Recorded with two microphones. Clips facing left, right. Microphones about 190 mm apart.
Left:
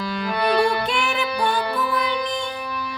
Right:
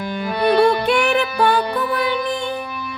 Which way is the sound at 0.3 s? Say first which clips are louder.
Right 5 dB; 25° right (ahead or behind).